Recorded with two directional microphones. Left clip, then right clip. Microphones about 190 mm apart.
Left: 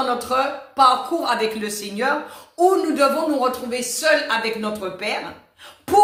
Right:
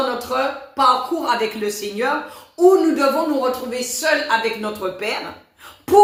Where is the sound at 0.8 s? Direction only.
15° left (ahead or behind).